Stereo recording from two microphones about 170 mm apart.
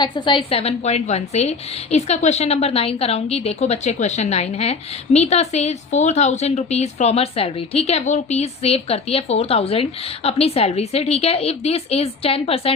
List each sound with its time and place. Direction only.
0.0 s a woman's voice: 25° left (ahead or behind)